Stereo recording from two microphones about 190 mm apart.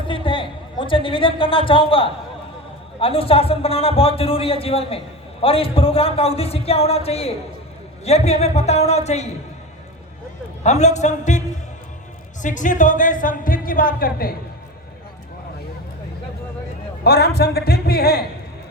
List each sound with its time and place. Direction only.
0.1 s a woman's voice: 25° left (ahead or behind)
10.6 s a man's voice: 35° left (ahead or behind)
17.0 s a man's voice: 60° left (ahead or behind)